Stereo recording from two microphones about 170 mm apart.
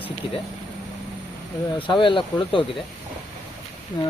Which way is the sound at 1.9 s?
30° left (ahead or behind).